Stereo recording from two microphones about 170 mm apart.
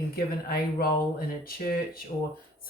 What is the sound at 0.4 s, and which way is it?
Speech, 65° left (ahead or behind).